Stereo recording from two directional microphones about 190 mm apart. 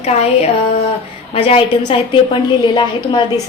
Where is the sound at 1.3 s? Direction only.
30° left (ahead or behind).